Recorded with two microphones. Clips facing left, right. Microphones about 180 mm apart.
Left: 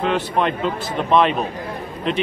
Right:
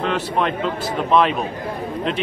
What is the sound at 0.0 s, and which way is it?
Speech, 5° left (ahead or behind).